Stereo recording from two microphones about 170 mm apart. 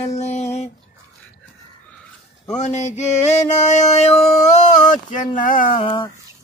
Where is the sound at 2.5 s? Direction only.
40° left (ahead or behind).